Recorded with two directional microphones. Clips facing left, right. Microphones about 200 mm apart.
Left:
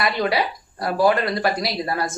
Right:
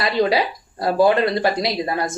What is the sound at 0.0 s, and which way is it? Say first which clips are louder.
Speech: right 3 dB; 25° right (ahead or behind).